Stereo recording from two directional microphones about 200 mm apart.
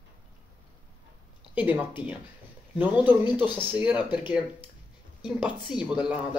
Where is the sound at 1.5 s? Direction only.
10° right (ahead or behind).